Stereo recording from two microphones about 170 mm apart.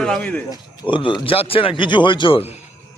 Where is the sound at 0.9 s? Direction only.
30° left (ahead or behind).